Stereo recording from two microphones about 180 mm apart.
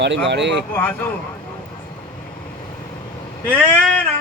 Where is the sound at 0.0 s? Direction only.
75° right (ahead or behind).